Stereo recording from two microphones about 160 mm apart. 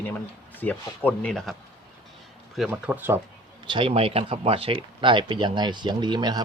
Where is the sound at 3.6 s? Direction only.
30° right (ahead or behind).